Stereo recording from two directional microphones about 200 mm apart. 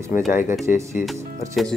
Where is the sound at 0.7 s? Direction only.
40° left (ahead or behind).